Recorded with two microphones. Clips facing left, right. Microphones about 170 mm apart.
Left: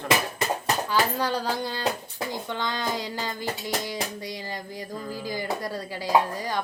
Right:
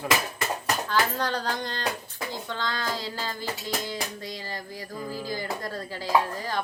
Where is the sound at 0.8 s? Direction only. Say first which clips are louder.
Left 1 dB; 10° left (ahead or behind).